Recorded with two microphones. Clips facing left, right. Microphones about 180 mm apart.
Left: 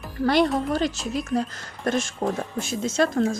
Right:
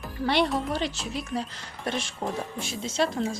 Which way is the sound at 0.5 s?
45° left (ahead or behind).